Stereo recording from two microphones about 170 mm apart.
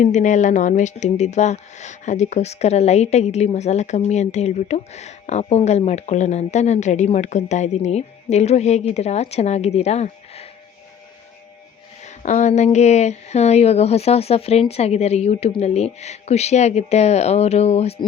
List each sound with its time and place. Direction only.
0.0 s speech: 45° left (ahead or behind)
12.0 s speech: 45° left (ahead or behind)